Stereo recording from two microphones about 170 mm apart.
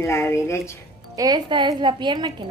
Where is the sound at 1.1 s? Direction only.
20° right (ahead or behind).